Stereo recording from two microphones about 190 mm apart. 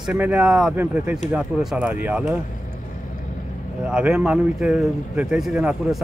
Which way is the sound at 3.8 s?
5° right (ahead or behind).